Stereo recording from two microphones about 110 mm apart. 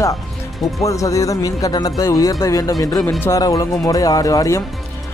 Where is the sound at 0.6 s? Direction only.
30° left (ahead or behind).